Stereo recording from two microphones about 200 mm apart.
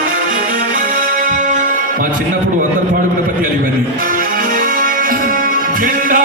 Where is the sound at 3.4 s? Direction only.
45° right (ahead or behind).